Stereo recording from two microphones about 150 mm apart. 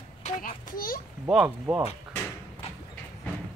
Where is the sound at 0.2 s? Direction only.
65° left (ahead or behind).